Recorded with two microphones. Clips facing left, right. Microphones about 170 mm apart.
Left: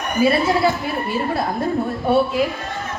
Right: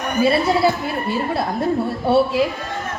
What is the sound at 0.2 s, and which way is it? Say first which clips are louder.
Speech: even; 25° right (ahead or behind).